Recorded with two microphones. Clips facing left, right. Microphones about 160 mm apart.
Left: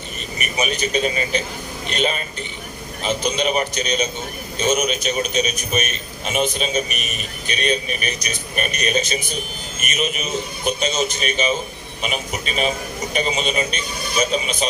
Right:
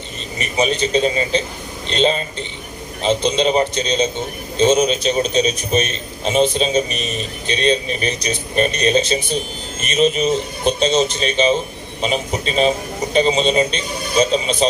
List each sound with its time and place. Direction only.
0.3 s a man's voice: 25° right (ahead or behind)